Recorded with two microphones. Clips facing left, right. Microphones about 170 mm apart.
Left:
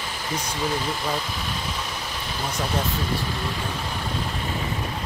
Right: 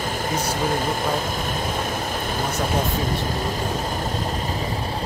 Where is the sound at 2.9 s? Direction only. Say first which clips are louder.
Right 3 dB; 45° right (ahead or behind).